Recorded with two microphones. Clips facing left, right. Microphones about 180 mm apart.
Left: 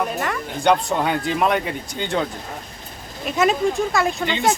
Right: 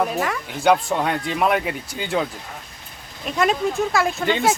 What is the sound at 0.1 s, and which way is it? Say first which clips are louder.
Speech: right 1 dB; centre (ahead or behind).